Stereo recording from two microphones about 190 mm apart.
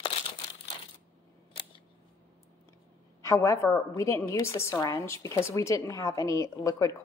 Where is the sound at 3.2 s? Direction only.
15° left (ahead or behind).